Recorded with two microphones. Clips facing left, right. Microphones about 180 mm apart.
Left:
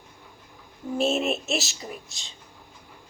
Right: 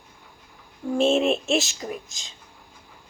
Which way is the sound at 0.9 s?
5° left (ahead or behind).